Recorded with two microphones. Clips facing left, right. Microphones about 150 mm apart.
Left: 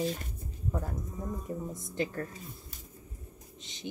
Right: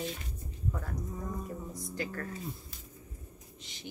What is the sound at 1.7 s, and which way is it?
Speech, 25° left (ahead or behind).